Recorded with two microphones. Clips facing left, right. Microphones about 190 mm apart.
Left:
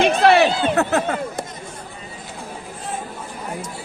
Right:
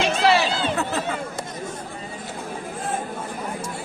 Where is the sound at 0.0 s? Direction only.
60° left (ahead or behind).